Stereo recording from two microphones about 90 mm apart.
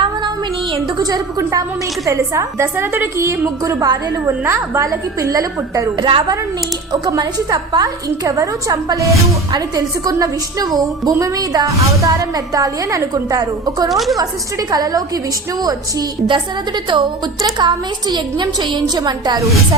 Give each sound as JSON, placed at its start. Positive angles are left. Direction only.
{"t": 0.9, "sound": "a woman's voice", "side_deg": -45}
{"t": 4.3, "sound": "a woman's voice", "side_deg": -30}
{"t": 6.0, "sound": "a woman's voice", "side_deg": -65}
{"t": 7.0, "sound": "a woman's voice", "side_deg": -45}
{"t": 13.9, "sound": "a woman's voice", "side_deg": 0}
{"t": 14.7, "sound": "a woman's voice", "side_deg": -45}